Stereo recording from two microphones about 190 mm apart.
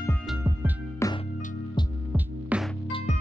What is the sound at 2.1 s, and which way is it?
Music, 5° right (ahead or behind).